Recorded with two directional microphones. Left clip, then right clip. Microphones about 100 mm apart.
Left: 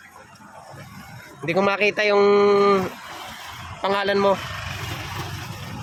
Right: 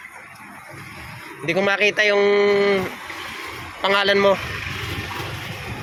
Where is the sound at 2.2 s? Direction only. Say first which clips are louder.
Left 1 dB; 65° left (ahead or behind).